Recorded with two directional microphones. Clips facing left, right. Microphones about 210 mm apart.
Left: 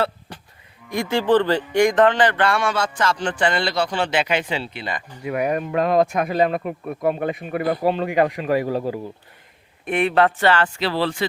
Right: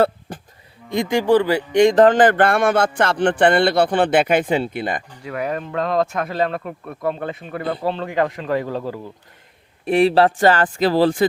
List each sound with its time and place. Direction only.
0.9 s speech: 20° right (ahead or behind)
2.0 s speech: 45° right (ahead or behind)
5.2 s speech: 15° left (ahead or behind)
9.8 s a man's voice: 35° right (ahead or behind)